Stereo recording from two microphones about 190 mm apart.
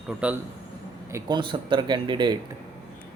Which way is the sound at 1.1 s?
25° right (ahead or behind).